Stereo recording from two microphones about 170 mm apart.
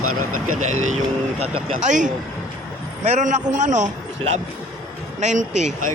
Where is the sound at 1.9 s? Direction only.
45° right (ahead or behind).